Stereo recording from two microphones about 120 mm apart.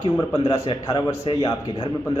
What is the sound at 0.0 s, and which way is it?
Speech, 30° left (ahead or behind).